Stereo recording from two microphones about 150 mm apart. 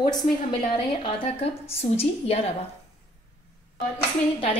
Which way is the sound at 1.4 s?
40° left (ahead or behind).